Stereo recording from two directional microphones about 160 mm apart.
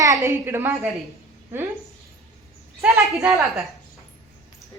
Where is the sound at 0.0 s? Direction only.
20° right (ahead or behind).